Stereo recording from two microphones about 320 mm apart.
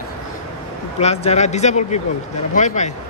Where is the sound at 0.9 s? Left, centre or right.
Centre.